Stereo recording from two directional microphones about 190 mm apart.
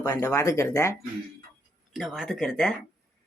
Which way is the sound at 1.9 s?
Centre (ahead or behind).